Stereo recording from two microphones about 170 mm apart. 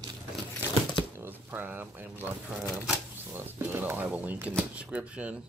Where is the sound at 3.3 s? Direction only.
15° right (ahead or behind).